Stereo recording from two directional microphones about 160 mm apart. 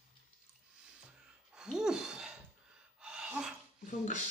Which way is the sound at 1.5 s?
5° right (ahead or behind).